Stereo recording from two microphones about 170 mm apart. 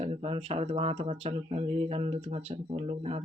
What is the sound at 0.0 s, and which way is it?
Mantra, 35° right (ahead or behind).